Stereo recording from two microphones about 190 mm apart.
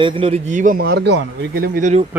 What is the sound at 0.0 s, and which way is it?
Speech, 30° right (ahead or behind).